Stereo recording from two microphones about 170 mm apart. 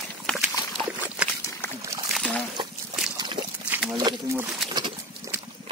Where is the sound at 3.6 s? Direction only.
10° right (ahead or behind).